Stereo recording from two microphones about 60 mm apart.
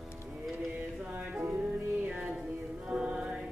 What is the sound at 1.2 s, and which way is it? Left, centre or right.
Music, centre.